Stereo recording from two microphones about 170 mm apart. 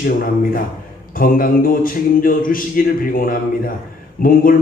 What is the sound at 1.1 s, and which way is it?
Speech, 55° left (ahead or behind).